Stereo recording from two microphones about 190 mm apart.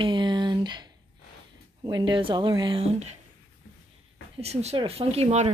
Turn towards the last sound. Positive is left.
turn(degrees=-35)  # may be behind; listen again after turning